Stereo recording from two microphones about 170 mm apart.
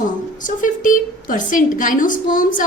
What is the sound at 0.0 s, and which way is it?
A woman's voice, 50° left (ahead or behind).